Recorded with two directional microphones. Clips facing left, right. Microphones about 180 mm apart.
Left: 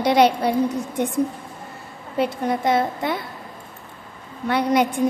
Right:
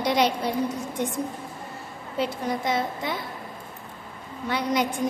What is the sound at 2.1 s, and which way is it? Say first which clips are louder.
A woman's voice: left 5 dB; 60° left (ahead or behind).